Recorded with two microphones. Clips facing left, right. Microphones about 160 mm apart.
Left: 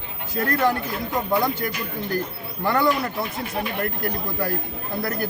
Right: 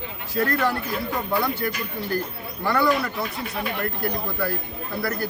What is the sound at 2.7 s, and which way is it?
Speech, 20° left (ahead or behind).